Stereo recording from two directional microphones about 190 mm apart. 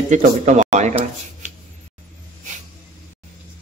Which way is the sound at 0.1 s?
40° right (ahead or behind).